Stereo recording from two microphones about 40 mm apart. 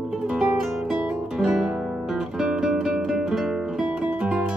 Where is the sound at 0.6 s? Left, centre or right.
Centre.